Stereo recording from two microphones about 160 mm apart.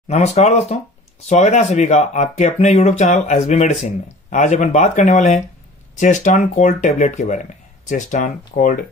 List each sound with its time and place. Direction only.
0.1 s speech: 45° left (ahead or behind)